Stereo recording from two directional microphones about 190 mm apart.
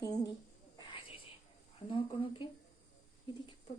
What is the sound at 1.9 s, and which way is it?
Speech, 25° left (ahead or behind).